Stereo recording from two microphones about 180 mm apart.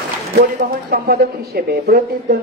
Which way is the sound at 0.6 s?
60° right (ahead or behind).